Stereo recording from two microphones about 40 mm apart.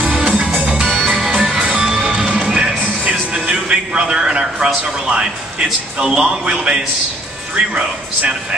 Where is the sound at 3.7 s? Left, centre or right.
Right.